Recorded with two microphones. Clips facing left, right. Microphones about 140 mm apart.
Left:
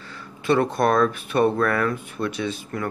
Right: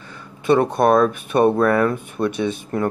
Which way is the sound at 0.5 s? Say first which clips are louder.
Right 4 dB; 20° right (ahead or behind).